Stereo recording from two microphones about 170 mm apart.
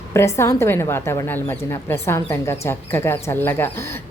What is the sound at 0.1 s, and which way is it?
A woman's voice, 15° left (ahead or behind).